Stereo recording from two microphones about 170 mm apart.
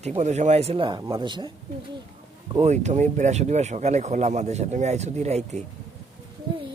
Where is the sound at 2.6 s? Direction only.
45° right (ahead or behind).